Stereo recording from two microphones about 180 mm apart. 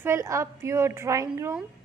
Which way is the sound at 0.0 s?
15° right (ahead or behind).